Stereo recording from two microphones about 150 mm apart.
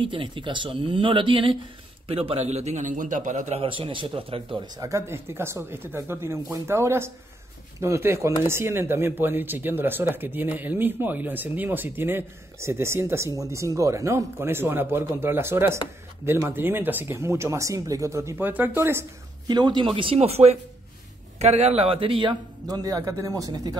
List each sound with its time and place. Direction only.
0.0 s a man's voice: 35° right (ahead or behind); by 3.5 s 55° right (ahead or behind)
3.5 s speech: 35° right (ahead or behind); by 19.0 s 15° right (ahead or behind)
19.4 s a man's voice: 30° right (ahead or behind)